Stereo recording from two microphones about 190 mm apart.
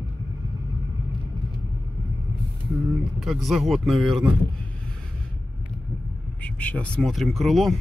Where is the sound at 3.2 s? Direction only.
Centre (ahead or behind).